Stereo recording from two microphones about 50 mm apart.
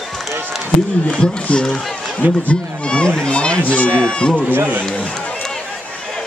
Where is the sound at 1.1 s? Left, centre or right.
Left.